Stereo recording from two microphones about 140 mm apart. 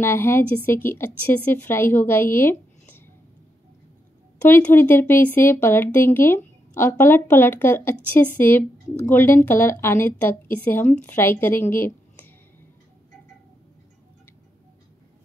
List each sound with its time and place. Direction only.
0.0 s speech: 15° left (ahead or behind)
4.5 s speech: 15° left (ahead or behind)
11.7 s a sound: 15° left (ahead or behind)